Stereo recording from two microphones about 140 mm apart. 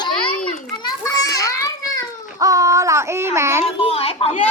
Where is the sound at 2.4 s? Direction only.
25° right (ahead or behind).